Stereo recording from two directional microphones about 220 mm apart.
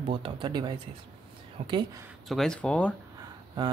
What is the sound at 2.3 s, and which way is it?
Speech, centre (ahead or behind).